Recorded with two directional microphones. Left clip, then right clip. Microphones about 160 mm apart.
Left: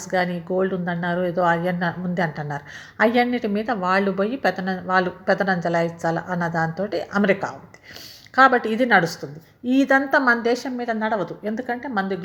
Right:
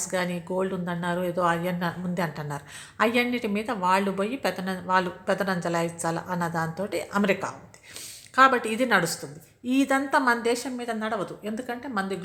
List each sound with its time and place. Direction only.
0.0 s speech: 5° left (ahead or behind)